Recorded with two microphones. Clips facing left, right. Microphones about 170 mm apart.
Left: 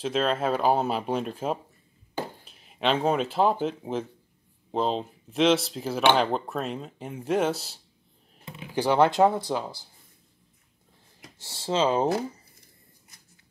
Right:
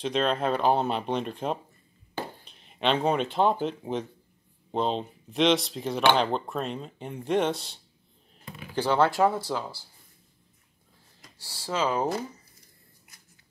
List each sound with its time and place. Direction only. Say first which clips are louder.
0.0 s speech: left 1 dB; 5° left (ahead or behind)
8.5 s speech: left 2 dB; 15° left (ahead or behind)
11.3 s speech: left 4 dB; 25° left (ahead or behind)